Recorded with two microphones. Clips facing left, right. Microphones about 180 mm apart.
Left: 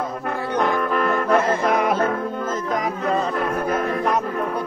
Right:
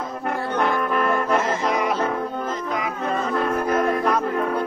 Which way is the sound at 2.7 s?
40° left (ahead or behind).